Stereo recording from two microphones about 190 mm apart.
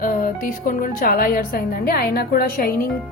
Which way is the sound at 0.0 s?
45° left (ahead or behind).